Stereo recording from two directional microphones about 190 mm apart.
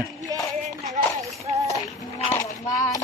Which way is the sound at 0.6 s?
35° right (ahead or behind).